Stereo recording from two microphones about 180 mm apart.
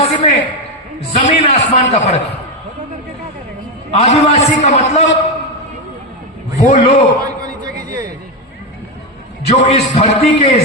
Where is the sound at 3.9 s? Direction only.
35° left (ahead or behind).